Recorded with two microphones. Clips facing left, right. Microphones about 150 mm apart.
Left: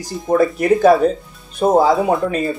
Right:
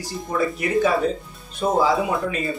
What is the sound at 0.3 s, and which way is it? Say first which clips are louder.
Speech: left 8 dB; 45° left (ahead or behind).